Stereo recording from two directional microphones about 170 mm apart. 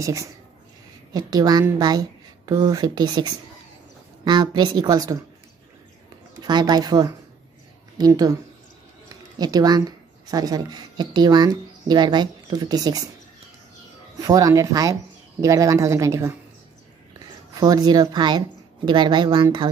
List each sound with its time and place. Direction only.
0.0 s a woman's voice: 20° right (ahead or behind)
6.4 s a woman's voice: 25° right (ahead or behind)
9.4 s speech: 25° right (ahead or behind)
14.2 s a woman's voice: 20° right (ahead or behind)
17.6 s a woman's voice: 20° right (ahead or behind)